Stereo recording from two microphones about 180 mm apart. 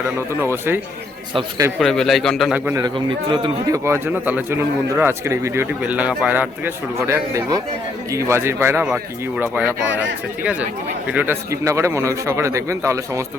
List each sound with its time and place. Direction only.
0.4 s speech: 10° right (ahead or behind)
1.3 s a man's voice: 30° right (ahead or behind)
1.8 s a man's voice: centre (ahead or behind)
2.6 s a man's voice: 20° right (ahead or behind)
3.8 s speech: 10° right (ahead or behind)